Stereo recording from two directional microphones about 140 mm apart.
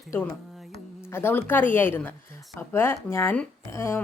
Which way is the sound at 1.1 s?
15° left (ahead or behind).